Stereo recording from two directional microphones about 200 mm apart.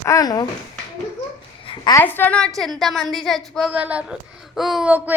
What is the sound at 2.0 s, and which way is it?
A woman's voice, 10° left (ahead or behind).